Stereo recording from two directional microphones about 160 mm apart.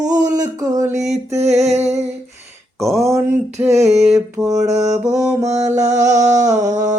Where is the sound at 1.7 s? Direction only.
45° right (ahead or behind).